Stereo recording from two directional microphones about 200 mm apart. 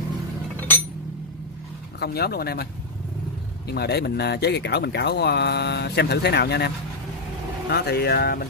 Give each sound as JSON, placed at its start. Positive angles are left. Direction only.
{"t": 2.0, "sound": "speech", "side_deg": 50}
{"t": 7.7, "sound": "speech", "side_deg": 55}